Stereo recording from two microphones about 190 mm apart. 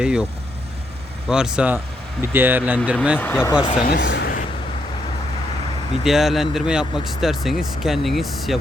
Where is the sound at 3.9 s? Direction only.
65° left (ahead or behind).